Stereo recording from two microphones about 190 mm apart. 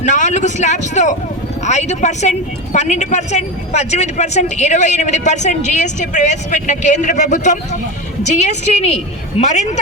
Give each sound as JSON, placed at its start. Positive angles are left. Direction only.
{"t": 0.0, "sound": "speech", "side_deg": 40}